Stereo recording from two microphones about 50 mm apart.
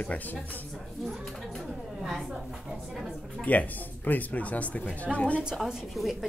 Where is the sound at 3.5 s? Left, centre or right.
Left.